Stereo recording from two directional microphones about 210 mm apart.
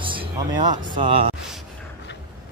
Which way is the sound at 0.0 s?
25° right (ahead or behind).